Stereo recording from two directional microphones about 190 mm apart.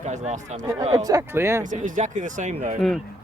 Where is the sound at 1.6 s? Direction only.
40° right (ahead or behind).